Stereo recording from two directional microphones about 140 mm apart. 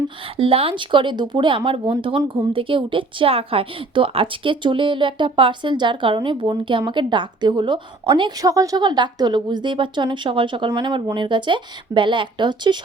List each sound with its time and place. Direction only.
0.3 s speech: 40° right (ahead or behind)